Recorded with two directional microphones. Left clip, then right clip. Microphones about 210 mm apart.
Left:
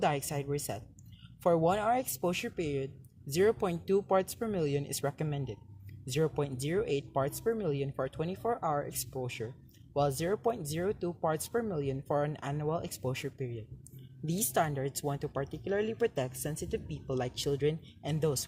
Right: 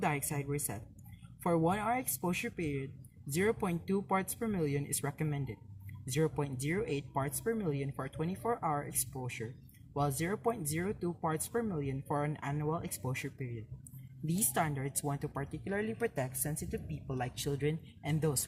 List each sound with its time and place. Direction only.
0.0 s speech: 25° left (ahead or behind)
14.5 s speech: 30° left (ahead or behind)